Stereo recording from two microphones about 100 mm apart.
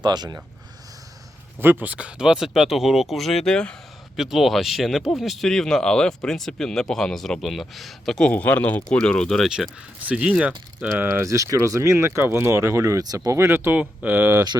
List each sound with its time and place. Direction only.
0.0 s speech: 45° right (ahead or behind)
1.5 s speech: 20° right (ahead or behind); by 8.3 s 5° left (ahead or behind)
8.3 s speech: 15° left (ahead or behind)
10.0 s speech: 10° right (ahead or behind)